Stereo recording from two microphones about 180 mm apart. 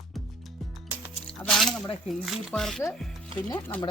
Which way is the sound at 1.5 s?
Centre (ahead or behind).